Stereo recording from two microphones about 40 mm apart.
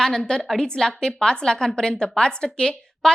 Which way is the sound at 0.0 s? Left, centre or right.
Centre.